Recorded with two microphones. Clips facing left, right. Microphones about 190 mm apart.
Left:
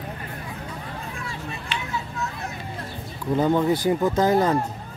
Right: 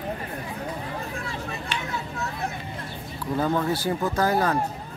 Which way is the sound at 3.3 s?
20° left (ahead or behind).